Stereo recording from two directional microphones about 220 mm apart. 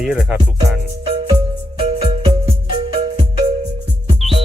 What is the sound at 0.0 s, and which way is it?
Speech, 5° right (ahead or behind).